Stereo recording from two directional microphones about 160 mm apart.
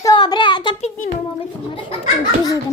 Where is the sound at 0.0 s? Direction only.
25° left (ahead or behind).